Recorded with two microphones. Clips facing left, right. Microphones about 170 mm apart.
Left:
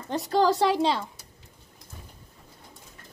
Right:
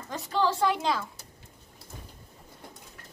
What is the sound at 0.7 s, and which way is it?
Speech, 30° left (ahead or behind).